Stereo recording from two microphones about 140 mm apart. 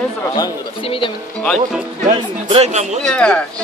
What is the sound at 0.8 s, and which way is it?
Speech, 40° left (ahead or behind).